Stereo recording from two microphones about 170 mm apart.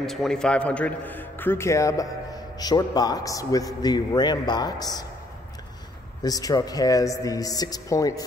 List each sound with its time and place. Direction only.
0.0 s a man's voice: centre (ahead or behind); by 5.0 s 25° left (ahead or behind)
6.2 s a man's voice: 20° left (ahead or behind)